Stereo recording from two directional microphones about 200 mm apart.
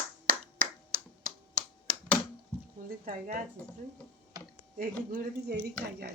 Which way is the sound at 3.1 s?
40° right (ahead or behind).